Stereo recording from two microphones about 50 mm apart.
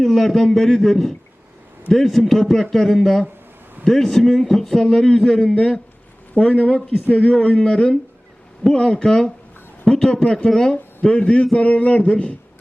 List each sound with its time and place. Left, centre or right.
0.0 s a man's voice: centre; by 6.6 s left
6.6 s a man's voice: centre